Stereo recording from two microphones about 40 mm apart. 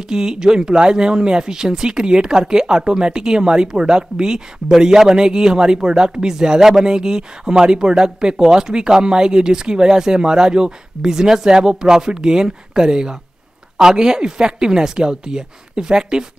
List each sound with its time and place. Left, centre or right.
0.1 s speech: centre